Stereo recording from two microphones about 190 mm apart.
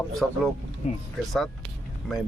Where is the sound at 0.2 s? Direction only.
5° left (ahead or behind).